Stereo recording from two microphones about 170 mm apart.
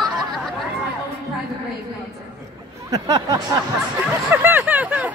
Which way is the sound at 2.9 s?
20° right (ahead or behind).